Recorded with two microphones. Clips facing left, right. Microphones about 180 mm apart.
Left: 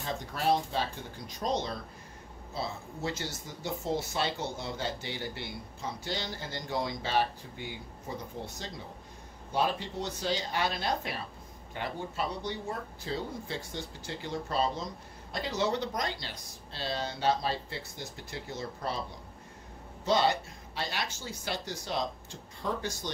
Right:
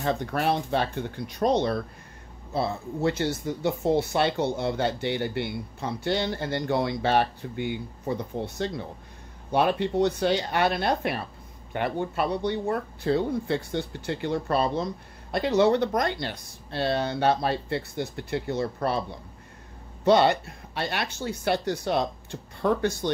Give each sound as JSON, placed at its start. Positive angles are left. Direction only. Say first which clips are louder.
{"t": 0.0, "sound": "speech", "louder": "right 6 dB", "side_deg": -60}
{"t": 20.1, "sound": "speech", "louder": "right 7 dB", "side_deg": -60}